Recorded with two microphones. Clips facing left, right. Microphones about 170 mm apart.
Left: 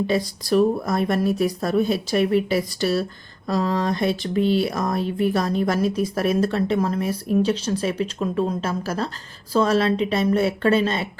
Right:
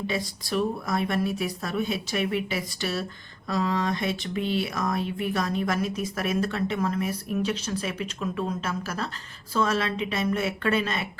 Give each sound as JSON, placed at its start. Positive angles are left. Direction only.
{"t": 0.1, "sound": "speech", "side_deg": 40}